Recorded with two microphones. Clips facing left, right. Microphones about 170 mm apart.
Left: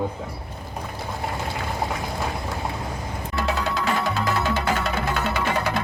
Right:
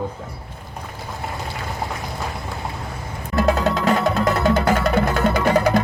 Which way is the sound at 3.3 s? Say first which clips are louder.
Right 7 dB; 40° right (ahead or behind).